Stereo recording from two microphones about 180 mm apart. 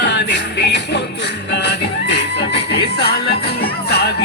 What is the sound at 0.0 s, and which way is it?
Music, 75° left (ahead or behind).